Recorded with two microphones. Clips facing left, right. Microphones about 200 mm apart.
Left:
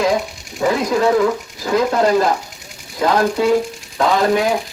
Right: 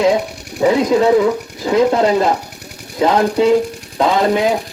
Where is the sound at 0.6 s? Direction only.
20° right (ahead or behind).